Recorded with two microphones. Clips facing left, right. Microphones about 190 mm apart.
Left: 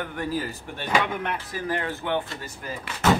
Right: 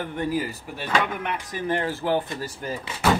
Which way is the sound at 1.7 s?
30° right (ahead or behind).